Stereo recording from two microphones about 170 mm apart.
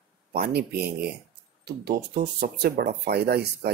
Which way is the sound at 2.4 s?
70° right (ahead or behind).